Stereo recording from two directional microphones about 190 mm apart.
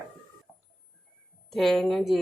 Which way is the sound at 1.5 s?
Centre (ahead or behind).